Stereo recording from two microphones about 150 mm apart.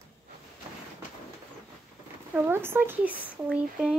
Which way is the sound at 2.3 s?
15° right (ahead or behind).